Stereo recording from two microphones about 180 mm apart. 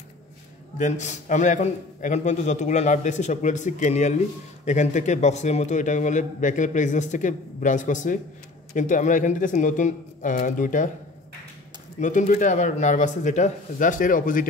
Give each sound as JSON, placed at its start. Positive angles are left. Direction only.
{"t": 0.7, "sound": "a man's voice", "side_deg": 40}
{"t": 12.0, "sound": "a man's voice", "side_deg": 45}